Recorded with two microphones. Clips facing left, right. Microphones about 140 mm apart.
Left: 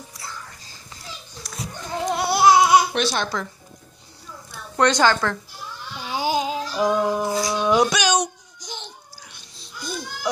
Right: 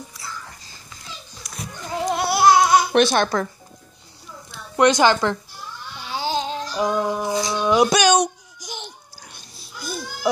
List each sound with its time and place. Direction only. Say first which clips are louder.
1.9 s babbling: right 1 dB; 5° right (ahead or behind)
2.9 s speech: right 6 dB; 55° right (ahead or behind)
4.5 s a woman's voice: right 3 dB; 15° right (ahead or behind)
6.0 s a sound: left 2 dB; 15° left (ahead or behind)
7.9 s baby cry: right 5 dB; 55° right (ahead or behind)
8.5 s babbling: right 2 dB; 15° right (ahead or behind)
9.2 s a sound: right 2 dB; 45° right (ahead or behind)
9.6 s babbling: even; 5° right (ahead or behind)